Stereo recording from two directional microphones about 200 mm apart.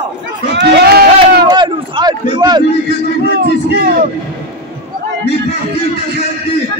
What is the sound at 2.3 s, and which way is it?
Speech, 20° right (ahead or behind).